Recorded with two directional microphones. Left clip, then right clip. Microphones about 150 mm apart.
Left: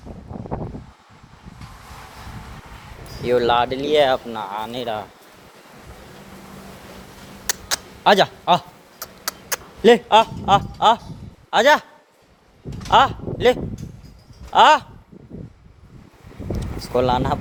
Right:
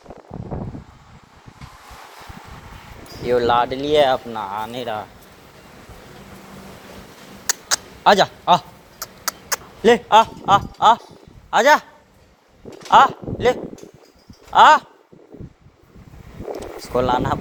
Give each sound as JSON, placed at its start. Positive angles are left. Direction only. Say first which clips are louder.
{"t": 3.2, "sound": "speech", "louder": "even", "side_deg": 25}
{"t": 7.4, "sound": "a sound", "louder": "right 3 dB", "side_deg": 15}
{"t": 9.2, "sound": "a sound", "louder": "right 2 dB", "side_deg": 30}
{"t": 11.5, "sound": "speech", "louder": "right 1 dB", "side_deg": 30}
{"t": 12.9, "sound": "speech", "louder": "right 3 dB", "side_deg": 30}
{"t": 16.8, "sound": "speech", "louder": "even", "side_deg": 30}